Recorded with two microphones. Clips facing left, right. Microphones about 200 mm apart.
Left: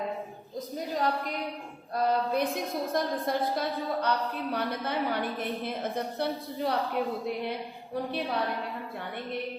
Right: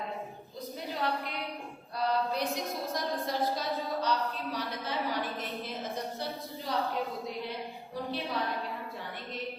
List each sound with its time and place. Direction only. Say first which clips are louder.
0.9 s a woman's voice: left 4 dB; 45° left (ahead or behind); by 6.7 s 60° left (ahead or behind)